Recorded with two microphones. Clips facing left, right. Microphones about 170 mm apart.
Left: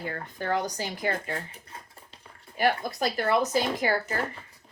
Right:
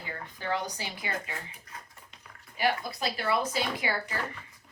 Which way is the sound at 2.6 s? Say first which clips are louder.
Left 4 dB; 50° left (ahead or behind).